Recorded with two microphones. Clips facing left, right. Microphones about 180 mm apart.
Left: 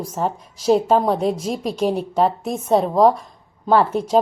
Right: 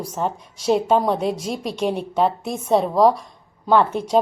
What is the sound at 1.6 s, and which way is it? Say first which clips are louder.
Speech: left 2 dB; centre (ahead or behind).